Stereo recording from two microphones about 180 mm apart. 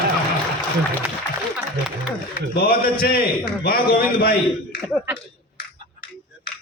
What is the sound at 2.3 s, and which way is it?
A man's voice, 55° left (ahead or behind).